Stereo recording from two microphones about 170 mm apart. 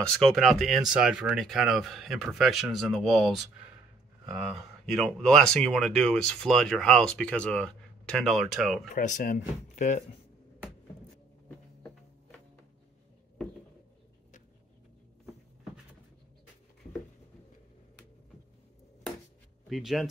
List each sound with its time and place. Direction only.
0.0 s speech: 5° left (ahead or behind)
8.9 s speech: 50° left (ahead or behind)
11.4 s a sound: 5° left (ahead or behind)
19.7 s speech: centre (ahead or behind)